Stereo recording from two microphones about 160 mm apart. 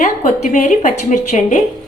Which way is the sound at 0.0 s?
50° left (ahead or behind).